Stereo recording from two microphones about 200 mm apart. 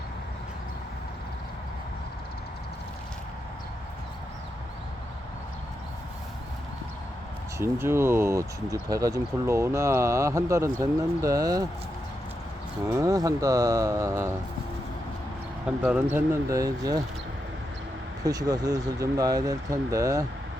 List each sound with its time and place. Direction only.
7.6 s speech: 10° right (ahead or behind)
12.9 s speech: 15° right (ahead or behind)
15.8 s speech: 10° right (ahead or behind)
18.3 s speech: 20° right (ahead or behind)